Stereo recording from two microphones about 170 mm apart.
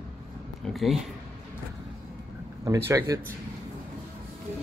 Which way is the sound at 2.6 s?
15° right (ahead or behind).